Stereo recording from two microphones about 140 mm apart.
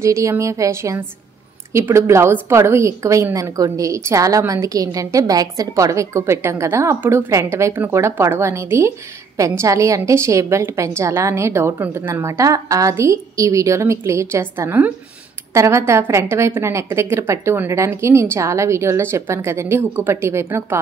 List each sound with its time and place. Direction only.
0.0 s a woman's voice: 20° right (ahead or behind)